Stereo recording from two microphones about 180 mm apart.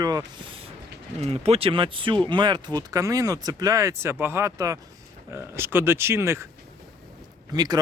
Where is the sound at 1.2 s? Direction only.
35° right (ahead or behind); by 6.4 s 15° right (ahead or behind).